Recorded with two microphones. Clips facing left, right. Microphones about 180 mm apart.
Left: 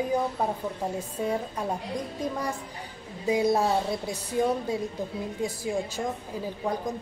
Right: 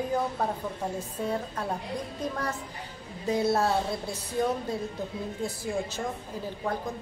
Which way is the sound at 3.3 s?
15° left (ahead or behind).